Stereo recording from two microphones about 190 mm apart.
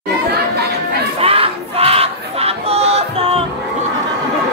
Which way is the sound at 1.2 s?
30° right (ahead or behind).